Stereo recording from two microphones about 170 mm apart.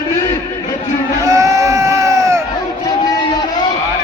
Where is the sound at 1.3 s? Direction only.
20° right (ahead or behind).